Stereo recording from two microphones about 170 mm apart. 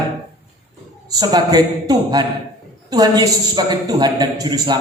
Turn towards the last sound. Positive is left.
turn(degrees=-25)  # may be behind; listen again after turning